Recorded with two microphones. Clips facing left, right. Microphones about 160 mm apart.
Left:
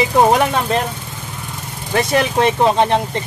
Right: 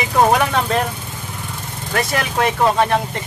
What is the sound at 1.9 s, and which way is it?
Speech, 25° left (ahead or behind).